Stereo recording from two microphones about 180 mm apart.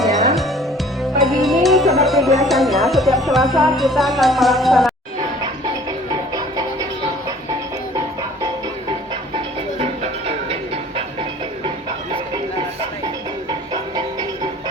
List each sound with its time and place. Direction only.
0.0 s music: centre (ahead or behind)
2.4 s speech: centre (ahead or behind)
6.1 s music: 20° right (ahead or behind)
8.9 s music: 30° right (ahead or behind)
13.5 s music: 25° right (ahead or behind)